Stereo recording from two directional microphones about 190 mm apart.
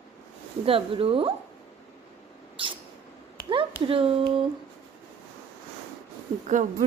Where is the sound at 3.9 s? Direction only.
30° right (ahead or behind).